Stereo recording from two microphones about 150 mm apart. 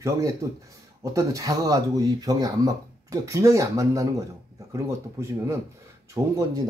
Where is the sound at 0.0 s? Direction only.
20° right (ahead or behind).